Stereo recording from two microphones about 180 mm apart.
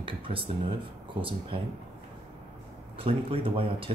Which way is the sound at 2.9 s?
30° right (ahead or behind).